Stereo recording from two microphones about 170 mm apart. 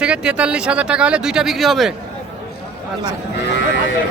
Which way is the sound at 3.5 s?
90° left.